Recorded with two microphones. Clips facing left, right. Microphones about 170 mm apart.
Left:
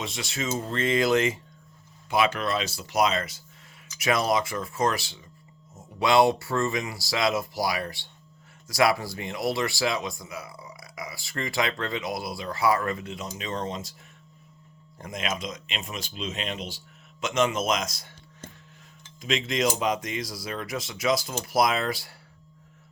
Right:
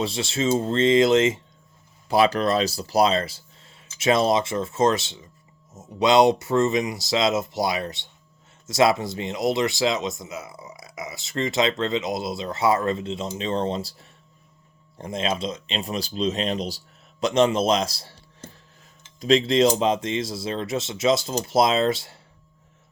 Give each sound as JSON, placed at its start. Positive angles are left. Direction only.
{"t": 0.0, "sound": "speech", "side_deg": -30}
{"t": 2.0, "sound": "speech", "side_deg": -35}
{"t": 14.9, "sound": "speech", "side_deg": -30}
{"t": 19.2, "sound": "speech", "side_deg": -35}